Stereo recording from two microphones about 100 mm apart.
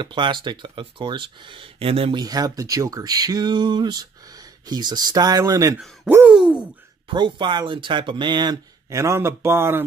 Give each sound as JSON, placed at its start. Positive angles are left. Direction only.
{"t": 0.0, "sound": "speech", "side_deg": -50}
{"t": 2.1, "sound": "speech", "side_deg": -40}
{"t": 6.2, "sound": "a sound", "side_deg": -10}
{"t": 7.1, "sound": "speech", "side_deg": -50}
{"t": 8.9, "sound": "speech", "side_deg": -30}